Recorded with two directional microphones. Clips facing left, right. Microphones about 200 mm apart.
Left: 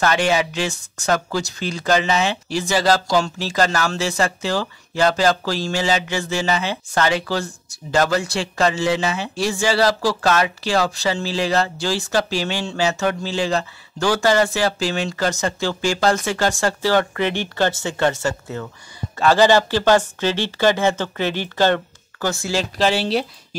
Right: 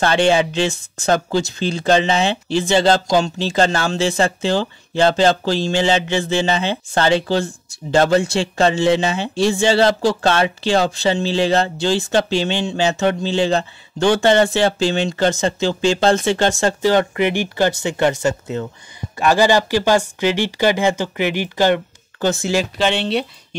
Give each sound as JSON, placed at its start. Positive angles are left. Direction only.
{"t": 0.0, "sound": "speech", "side_deg": -30}
{"t": 22.8, "sound": "speech", "side_deg": 0}